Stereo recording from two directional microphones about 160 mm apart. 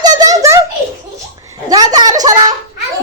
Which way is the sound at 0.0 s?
25° right (ahead or behind).